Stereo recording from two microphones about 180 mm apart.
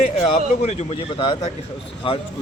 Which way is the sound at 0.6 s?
40° left (ahead or behind).